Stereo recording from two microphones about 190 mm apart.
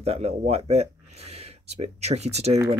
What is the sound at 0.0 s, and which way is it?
Speech, 35° right (ahead or behind).